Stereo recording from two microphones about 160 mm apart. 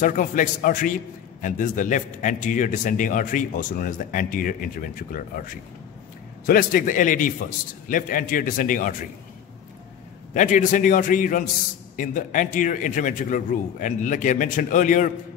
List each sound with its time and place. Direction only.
0.0 s a man's voice: 55° left (ahead or behind)
10.3 s a man's voice: 50° left (ahead or behind)